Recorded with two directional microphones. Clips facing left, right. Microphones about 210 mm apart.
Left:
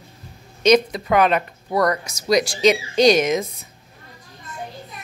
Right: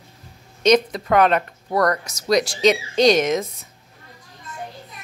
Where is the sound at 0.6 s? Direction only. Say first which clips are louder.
Left 1 dB; 10° left (ahead or behind).